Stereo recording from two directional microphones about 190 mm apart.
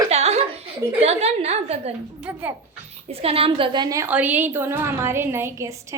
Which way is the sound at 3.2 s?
30° right (ahead or behind).